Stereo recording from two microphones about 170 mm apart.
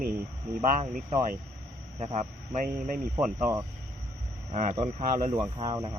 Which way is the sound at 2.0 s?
40° right (ahead or behind).